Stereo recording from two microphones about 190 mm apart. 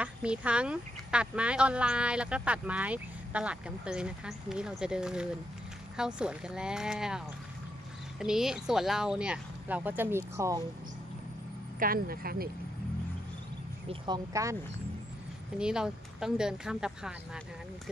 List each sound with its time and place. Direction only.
0.0 s speech: 5° right (ahead or behind)
11.8 s speech: 50° right (ahead or behind)
13.8 s speech: 25° right (ahead or behind)
15.5 s speech: 5° right (ahead or behind)